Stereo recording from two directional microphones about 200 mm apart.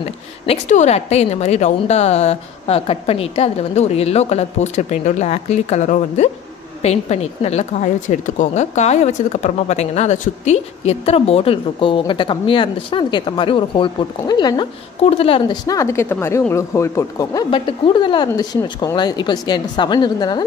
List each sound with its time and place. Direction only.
0.0 s a woman's voice: 35° left (ahead or behind)